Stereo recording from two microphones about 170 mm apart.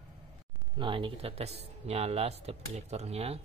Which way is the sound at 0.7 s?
30° right (ahead or behind).